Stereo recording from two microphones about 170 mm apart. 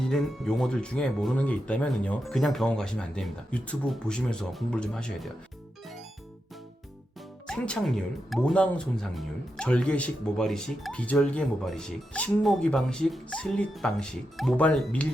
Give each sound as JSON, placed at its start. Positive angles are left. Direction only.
{"t": 0.0, "sound": "speech", "side_deg": 5}
{"t": 7.4, "sound": "speech", "side_deg": 5}